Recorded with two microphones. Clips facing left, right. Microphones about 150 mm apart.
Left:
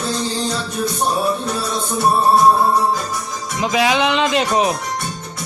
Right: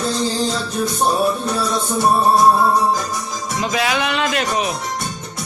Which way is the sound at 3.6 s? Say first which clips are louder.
Left 4 dB; 15° left (ahead or behind).